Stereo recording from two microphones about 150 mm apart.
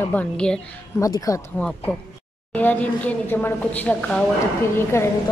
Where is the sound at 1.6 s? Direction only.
5° left (ahead or behind).